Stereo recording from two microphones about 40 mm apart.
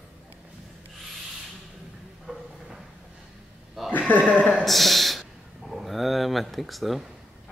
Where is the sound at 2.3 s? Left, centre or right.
Centre.